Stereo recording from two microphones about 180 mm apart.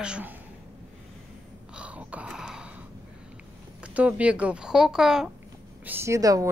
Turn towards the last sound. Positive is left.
turn(degrees=-20)  # may be behind; listen again after turning